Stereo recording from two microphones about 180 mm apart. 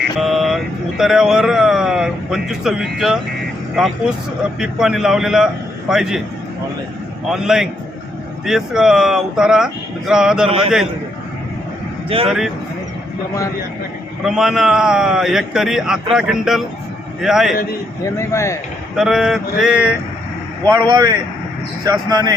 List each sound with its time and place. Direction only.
0.2 s speech: centre (ahead or behind)
4.6 s a man's voice: 5° right (ahead or behind)
7.3 s a man's voice: 5° right (ahead or behind)
12.0 s speech: 30° right (ahead or behind)
14.3 s a man's voice: centre (ahead or behind)
18.2 s speech: 15° left (ahead or behind)
18.9 s a man's voice: 5° right (ahead or behind)
20.7 s a man's voice: 20° right (ahead or behind)